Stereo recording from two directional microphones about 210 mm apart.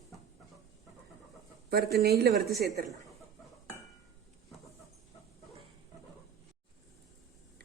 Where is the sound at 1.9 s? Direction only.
50° right (ahead or behind).